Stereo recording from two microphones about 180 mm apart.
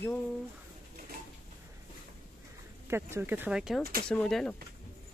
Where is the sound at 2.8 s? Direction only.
15° right (ahead or behind); by 4.5 s 5° left (ahead or behind).